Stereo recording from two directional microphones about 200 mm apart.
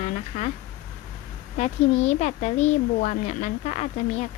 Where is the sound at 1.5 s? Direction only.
35° left (ahead or behind).